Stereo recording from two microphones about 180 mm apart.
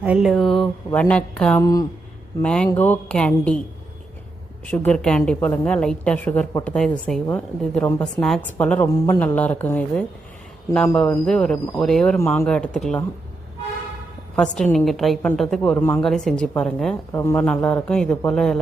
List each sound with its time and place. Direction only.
0.0 s a woman's voice: 5° right (ahead or behind)
1.6 s speech: 20° left (ahead or behind)
2.4 s a woman's voice: 5° left (ahead or behind)
4.6 s a woman's voice: 5° left (ahead or behind)
12.1 s a woman's voice: 15° left (ahead or behind)
14.3 s a woman's voice: 5° left (ahead or behind)
17.1 s a woman's voice: 15° left (ahead or behind)